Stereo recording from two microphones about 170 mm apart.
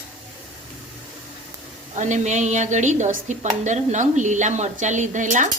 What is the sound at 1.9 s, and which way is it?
A woman's voice, 45° right (ahead or behind).